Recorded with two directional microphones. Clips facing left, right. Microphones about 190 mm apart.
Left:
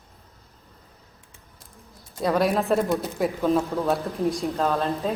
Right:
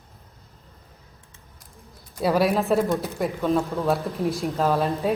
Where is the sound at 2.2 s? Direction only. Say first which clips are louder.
Right 1 dB; 5° right (ahead or behind).